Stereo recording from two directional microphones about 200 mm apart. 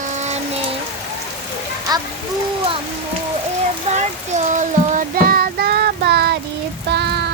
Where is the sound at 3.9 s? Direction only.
35° right (ahead or behind); by 6.4 s 55° right (ahead or behind).